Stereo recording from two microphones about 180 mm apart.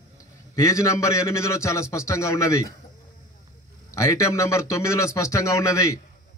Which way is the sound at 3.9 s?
15° left (ahead or behind).